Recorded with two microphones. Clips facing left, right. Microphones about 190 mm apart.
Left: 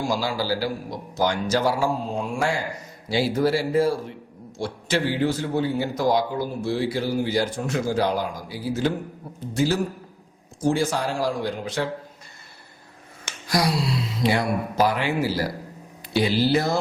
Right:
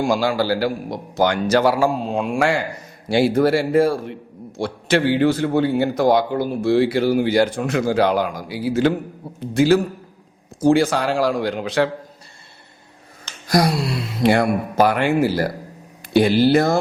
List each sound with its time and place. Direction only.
0.1 s a man's voice: 55° right (ahead or behind); by 2.6 s 90° right
3.1 s a man's voice: 55° right (ahead or behind); by 11.9 s 85° right
13.5 s a man's voice: 50° right (ahead or behind)